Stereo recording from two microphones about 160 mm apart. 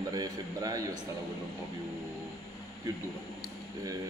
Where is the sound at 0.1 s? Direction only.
25° right (ahead or behind).